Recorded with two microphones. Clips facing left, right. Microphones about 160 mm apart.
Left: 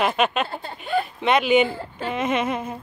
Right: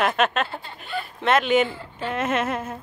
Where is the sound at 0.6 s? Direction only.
45° left (ahead or behind).